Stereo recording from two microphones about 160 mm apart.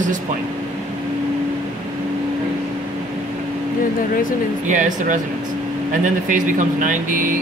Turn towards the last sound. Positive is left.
turn(degrees=-55)  # may be behind; listen again after turning